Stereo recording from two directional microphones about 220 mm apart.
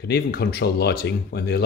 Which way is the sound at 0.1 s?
45° left (ahead or behind).